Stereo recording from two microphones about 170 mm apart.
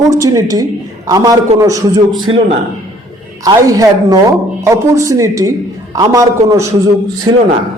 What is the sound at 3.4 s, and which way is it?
Speech, 20° right (ahead or behind).